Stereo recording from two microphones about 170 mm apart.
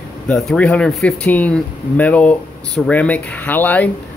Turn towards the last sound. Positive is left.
turn(degrees=10)  # may be behind; listen again after turning